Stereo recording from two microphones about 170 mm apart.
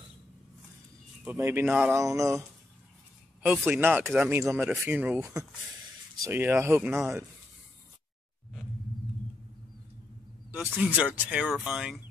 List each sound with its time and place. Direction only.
1.2 s speech: 15° right (ahead or behind)
3.4 s speech: 10° right (ahead or behind)
10.5 s speech: 10° right (ahead or behind)